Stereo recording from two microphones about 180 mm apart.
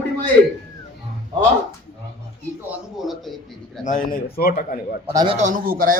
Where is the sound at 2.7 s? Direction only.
Centre (ahead or behind).